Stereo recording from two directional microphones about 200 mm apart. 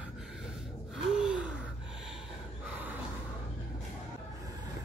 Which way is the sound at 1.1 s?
5° right (ahead or behind).